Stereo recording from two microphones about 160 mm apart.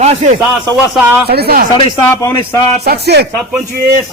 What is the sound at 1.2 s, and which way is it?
Speech, 80° right.